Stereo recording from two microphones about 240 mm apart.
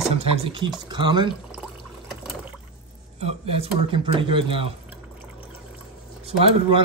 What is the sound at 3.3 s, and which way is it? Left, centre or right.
Speech, right.